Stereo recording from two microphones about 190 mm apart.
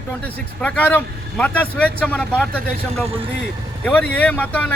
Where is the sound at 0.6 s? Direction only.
10° left (ahead or behind).